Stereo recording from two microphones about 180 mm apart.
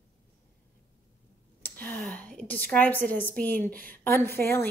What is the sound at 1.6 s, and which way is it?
A woman's voice, 10° left (ahead or behind).